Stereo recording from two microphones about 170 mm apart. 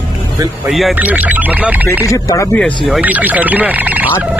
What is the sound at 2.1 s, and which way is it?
Speech, 20° left (ahead or behind).